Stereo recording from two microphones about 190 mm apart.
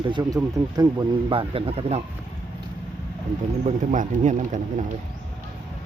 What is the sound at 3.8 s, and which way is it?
Speech, 40° right (ahead or behind).